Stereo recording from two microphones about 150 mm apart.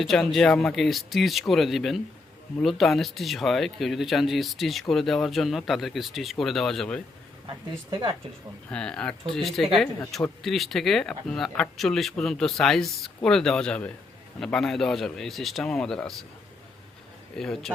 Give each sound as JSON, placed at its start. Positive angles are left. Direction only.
{"t": 0.0, "sound": "speech", "side_deg": 0}
{"t": 7.9, "sound": "speech", "side_deg": -30}
{"t": 8.7, "sound": "speech", "side_deg": 5}
{"t": 17.3, "sound": "speech", "side_deg": 5}